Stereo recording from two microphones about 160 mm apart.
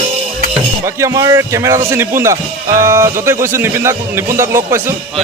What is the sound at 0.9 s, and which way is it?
Speech, 20° right (ahead or behind).